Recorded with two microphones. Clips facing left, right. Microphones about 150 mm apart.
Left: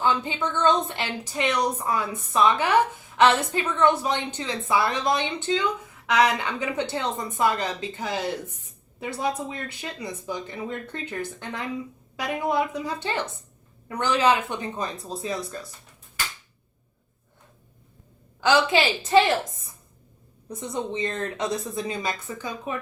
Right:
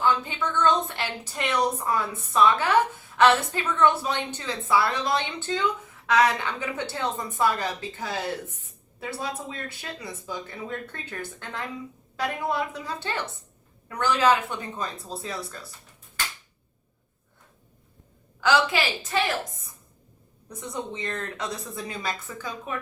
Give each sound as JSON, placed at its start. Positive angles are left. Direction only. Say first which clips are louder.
{"t": 0.0, "sound": "a woman's voice", "louder": "even", "side_deg": 20}
{"t": 18.3, "sound": "a woman's voice", "louder": "left 2 dB", "side_deg": 25}
{"t": 20.5, "sound": "a woman's voice", "louder": "left 4 dB", "side_deg": 25}